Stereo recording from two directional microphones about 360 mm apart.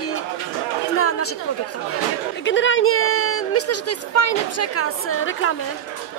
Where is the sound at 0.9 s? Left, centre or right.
Left.